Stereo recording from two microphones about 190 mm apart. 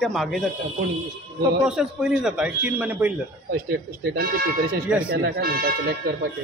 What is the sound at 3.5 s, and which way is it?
Speech, 50° right (ahead or behind).